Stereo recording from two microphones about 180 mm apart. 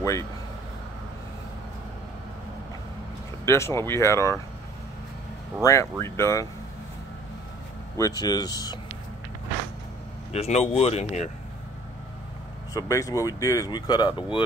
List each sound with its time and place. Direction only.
0.0 s speech: 15° left (ahead or behind)
3.4 s speech: 15° left (ahead or behind)
5.6 s speech: 15° left (ahead or behind)
8.0 s speech: 20° left (ahead or behind)
10.3 s speech: 35° left (ahead or behind)
12.7 s speech: 20° left (ahead or behind)